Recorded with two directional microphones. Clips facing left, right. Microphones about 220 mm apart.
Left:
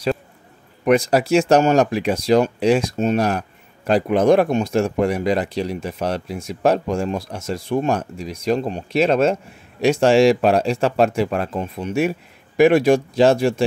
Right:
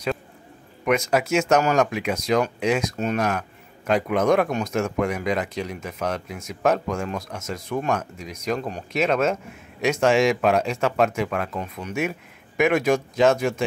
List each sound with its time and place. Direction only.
0.8 s speech: 35° left (ahead or behind)